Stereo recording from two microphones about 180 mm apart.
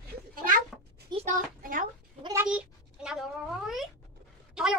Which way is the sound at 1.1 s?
45° right (ahead or behind).